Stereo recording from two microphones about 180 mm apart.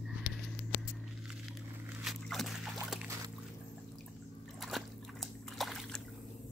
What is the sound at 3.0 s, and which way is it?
Boat, 15° right (ahead or behind).